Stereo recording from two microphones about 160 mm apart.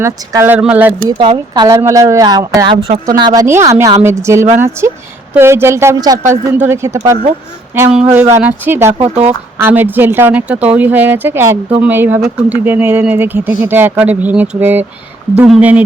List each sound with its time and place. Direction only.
0.0 s speech: 15° right (ahead or behind)
1.0 s speech: 30° right (ahead or behind)
3.4 s speech: 15° right (ahead or behind)
9.0 s speech: 40° right (ahead or behind)
9.6 s speech: 10° right (ahead or behind)